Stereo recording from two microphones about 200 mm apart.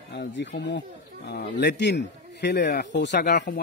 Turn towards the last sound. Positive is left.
turn(degrees=55)  # may be behind; listen again after turning